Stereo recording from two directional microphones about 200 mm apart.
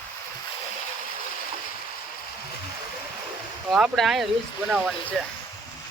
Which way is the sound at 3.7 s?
Centre (ahead or behind).